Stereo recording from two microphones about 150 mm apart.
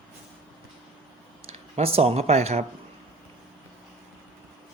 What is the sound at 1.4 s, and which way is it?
Speech, 45° right (ahead or behind).